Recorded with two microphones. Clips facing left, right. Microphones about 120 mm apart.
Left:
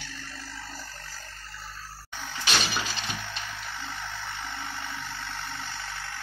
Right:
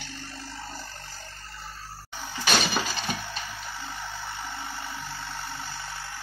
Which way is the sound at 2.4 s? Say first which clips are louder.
Right 4 dB; 45° right (ahead or behind).